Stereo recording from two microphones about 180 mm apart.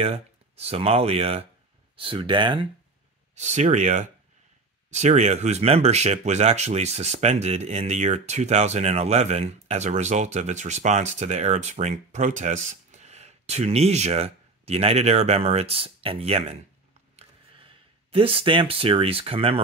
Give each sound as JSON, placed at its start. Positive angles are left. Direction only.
{"t": 0.0, "sound": "speech", "side_deg": -35}
{"t": 3.3, "sound": "speech", "side_deg": -40}
{"t": 18.1, "sound": "speech", "side_deg": -30}